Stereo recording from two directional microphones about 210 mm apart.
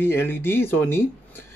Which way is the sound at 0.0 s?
10° left (ahead or behind).